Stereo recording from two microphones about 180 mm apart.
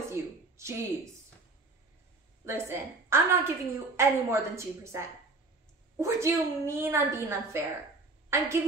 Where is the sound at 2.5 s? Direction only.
15° right (ahead or behind).